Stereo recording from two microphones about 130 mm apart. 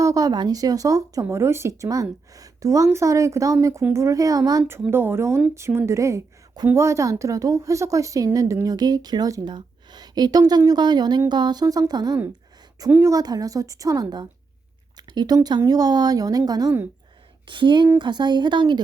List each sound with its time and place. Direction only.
0.0 s a woman's voice: 25° right (ahead or behind)
4.9 s a woman's voice: 15° right (ahead or behind)
14.9 s a sound: 30° right (ahead or behind)
15.4 s a woman's voice: 30° right (ahead or behind)